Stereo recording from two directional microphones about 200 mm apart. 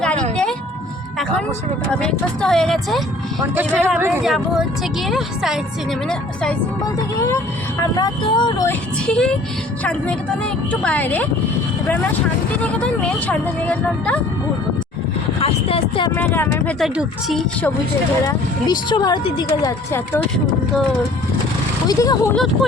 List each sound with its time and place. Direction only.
0.0 s vehicle: 5° left (ahead or behind)
2.2 s a woman's voice: 5° left (ahead or behind)
3.5 s a woman's voice: 10° right (ahead or behind); by 8.7 s 20° left (ahead or behind)
9.0 s a woman's voice: 5° left (ahead or behind)
15.4 s a sound: 30° left (ahead or behind)
16.1 s speech: 10° left (ahead or behind)
16.8 s a woman's voice: centre (ahead or behind)
18.3 s speech: 20° left (ahead or behind)
21.8 s speech: 15° left (ahead or behind)